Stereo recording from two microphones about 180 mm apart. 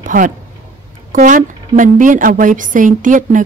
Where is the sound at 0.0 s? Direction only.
45° right (ahead or behind).